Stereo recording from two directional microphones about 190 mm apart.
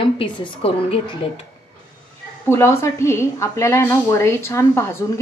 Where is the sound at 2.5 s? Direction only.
15° left (ahead or behind).